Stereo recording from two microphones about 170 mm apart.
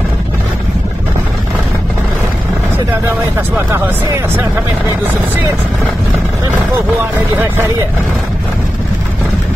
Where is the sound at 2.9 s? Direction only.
15° right (ahead or behind).